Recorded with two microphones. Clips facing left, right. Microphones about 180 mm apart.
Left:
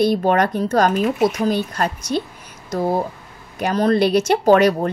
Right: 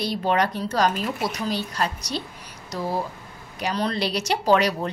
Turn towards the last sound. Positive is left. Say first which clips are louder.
# left 7 dB
turn(degrees=50)  # may be behind; listen again after turning